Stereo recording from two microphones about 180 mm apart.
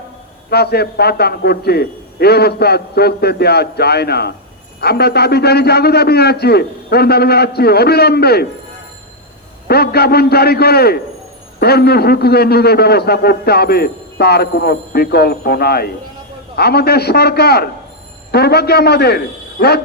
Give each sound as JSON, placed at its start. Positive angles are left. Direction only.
{"t": 0.5, "sound": "a man's voice", "side_deg": 60}
{"t": 9.6, "sound": "a man's voice", "side_deg": 60}